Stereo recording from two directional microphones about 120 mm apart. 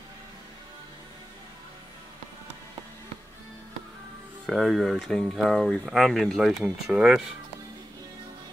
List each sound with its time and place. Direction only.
4.5 s speech: centre (ahead or behind)